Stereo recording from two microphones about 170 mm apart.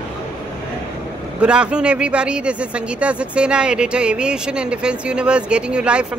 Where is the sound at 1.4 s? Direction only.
5° right (ahead or behind).